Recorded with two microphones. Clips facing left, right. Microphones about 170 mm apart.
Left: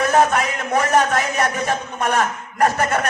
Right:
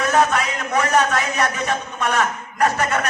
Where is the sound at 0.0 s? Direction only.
45° left (ahead or behind).